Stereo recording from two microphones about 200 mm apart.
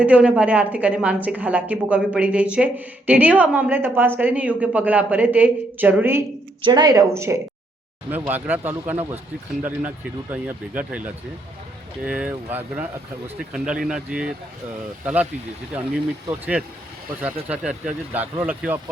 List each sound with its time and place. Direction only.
0.0 s a woman's voice: 5° right (ahead or behind)
6.6 s a woman's voice: 20° right (ahead or behind)
17.5 s a woman's voice: 5° right (ahead or behind)